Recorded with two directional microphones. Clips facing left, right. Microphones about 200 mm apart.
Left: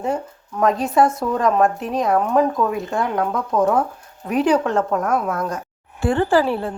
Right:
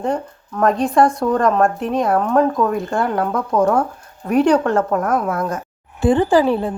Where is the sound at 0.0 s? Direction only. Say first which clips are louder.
Right 2 dB; 5° left (ahead or behind).